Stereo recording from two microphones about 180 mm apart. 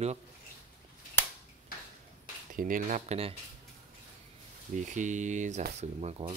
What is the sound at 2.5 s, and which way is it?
Speech, 50° right (ahead or behind).